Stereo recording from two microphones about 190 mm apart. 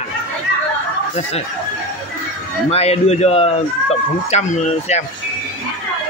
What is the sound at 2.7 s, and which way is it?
A man's voice, 35° left (ahead or behind).